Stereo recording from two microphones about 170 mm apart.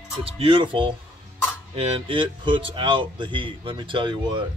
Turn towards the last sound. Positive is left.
turn(degrees=-25)  # may be behind; listen again after turning